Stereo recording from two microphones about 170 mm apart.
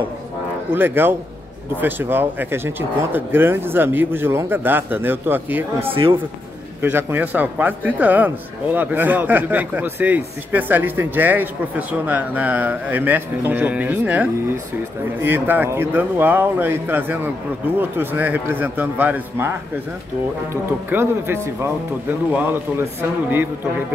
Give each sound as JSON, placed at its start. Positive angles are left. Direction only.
{"t": 0.7, "sound": "a man's voice", "side_deg": -10}
{"t": 20.9, "sound": "a man's voice", "side_deg": -15}